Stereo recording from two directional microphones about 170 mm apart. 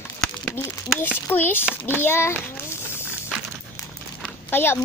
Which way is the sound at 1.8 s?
10° left (ahead or behind).